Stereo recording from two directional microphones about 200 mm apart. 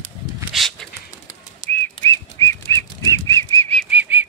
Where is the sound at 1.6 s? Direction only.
40° left (ahead or behind).